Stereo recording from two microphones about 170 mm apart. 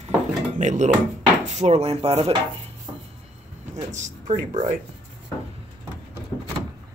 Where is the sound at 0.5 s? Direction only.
45° right (ahead or behind).